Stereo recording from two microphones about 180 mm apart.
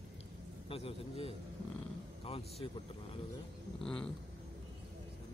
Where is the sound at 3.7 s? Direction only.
5° left (ahead or behind).